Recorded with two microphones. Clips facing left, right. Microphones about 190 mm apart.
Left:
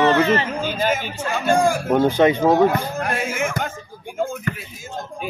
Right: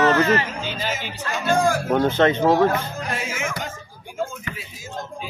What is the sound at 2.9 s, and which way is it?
Speech, 55° left (ahead or behind).